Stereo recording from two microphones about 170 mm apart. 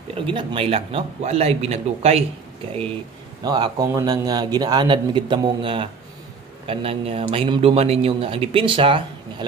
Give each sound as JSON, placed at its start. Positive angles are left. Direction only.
{"t": 0.1, "sound": "a man's voice", "side_deg": -30}
{"t": 3.4, "sound": "a man's voice", "side_deg": -25}